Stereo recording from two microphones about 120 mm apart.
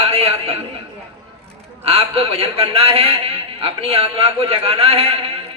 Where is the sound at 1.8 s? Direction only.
55° right (ahead or behind).